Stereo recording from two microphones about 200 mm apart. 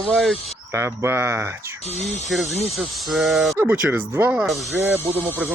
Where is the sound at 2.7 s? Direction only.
Centre (ahead or behind).